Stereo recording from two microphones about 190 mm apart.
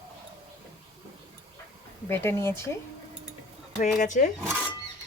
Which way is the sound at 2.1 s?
15° left (ahead or behind).